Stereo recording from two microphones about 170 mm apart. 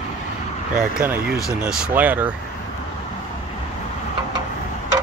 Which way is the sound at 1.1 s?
65° right (ahead or behind).